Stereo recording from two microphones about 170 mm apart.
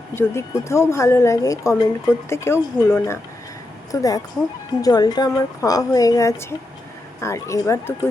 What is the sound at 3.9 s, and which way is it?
A woman's voice, 20° left (ahead or behind).